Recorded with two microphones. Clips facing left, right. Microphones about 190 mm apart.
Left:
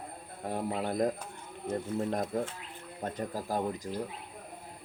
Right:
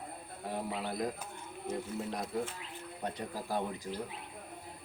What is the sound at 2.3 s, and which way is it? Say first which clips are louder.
Speech: left 3 dB; 50° left (ahead or behind).